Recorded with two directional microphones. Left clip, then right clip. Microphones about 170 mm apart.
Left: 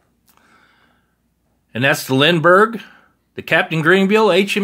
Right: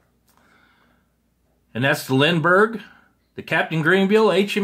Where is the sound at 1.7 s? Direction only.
40° left (ahead or behind).